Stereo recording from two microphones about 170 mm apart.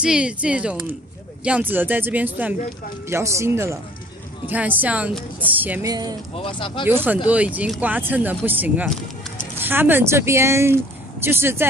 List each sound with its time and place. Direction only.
0.0 s speech: 5° right (ahead or behind)
5.9 s speech: 20° right (ahead or behind)
6.3 s speech: 30° left (ahead or behind)
6.9 s speech: 15° right (ahead or behind)